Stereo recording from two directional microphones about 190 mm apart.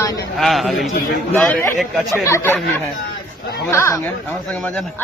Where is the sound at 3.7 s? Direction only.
15° left (ahead or behind).